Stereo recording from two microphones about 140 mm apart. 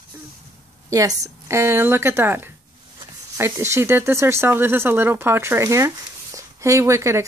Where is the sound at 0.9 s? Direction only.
25° right (ahead or behind).